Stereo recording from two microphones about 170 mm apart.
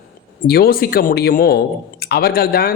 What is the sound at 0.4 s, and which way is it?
A man's voice, 65° left (ahead or behind).